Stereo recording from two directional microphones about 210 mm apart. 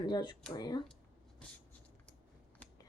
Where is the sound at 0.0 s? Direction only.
20° left (ahead or behind).